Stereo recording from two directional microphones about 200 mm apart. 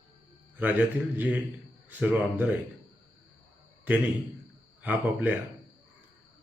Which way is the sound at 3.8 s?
10° right (ahead or behind).